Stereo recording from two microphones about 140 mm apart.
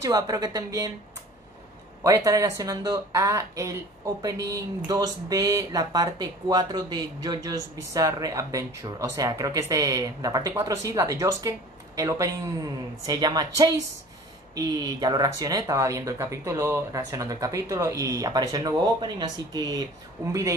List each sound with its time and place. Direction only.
0.0 s speech: 25° right (ahead or behind)
2.0 s speech: 20° right (ahead or behind)